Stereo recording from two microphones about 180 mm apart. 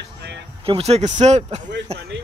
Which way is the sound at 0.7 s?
35° right (ahead or behind).